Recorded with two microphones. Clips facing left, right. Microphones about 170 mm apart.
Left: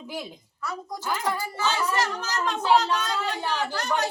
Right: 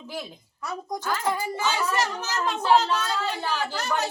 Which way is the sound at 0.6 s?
20° right (ahead or behind).